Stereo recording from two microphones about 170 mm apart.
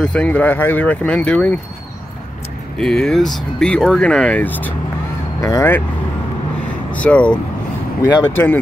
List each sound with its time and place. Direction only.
0.0 s speech: 5° left (ahead or behind)
2.8 s speech: 5° left (ahead or behind)
7.0 s speech: 5° left (ahead or behind)